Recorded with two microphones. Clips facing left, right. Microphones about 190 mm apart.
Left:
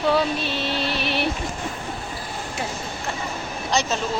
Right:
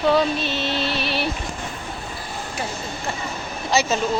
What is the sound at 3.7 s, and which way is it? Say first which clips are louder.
Speech: right 3 dB; 5° right (ahead or behind).